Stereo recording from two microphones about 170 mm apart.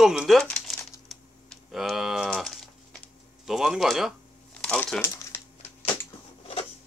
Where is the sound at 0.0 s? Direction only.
5° right (ahead or behind).